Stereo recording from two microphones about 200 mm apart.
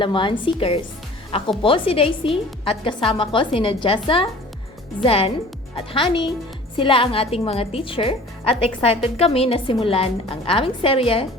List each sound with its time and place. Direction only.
0.0 s a woman's voice: 25° left (ahead or behind)